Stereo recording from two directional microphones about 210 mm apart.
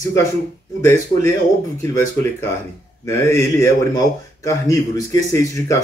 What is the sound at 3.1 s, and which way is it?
A man's voice, 10° left (ahead or behind).